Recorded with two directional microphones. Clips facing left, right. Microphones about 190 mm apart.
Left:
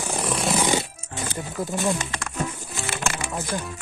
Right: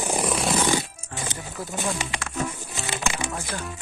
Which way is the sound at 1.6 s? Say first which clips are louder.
Left 6 dB; 20° left (ahead or behind).